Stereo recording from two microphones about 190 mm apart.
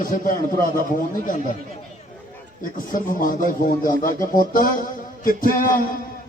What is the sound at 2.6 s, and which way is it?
A man's voice, 45° left (ahead or behind).